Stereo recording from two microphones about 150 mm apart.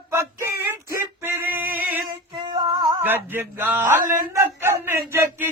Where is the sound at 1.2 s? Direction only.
15° right (ahead or behind).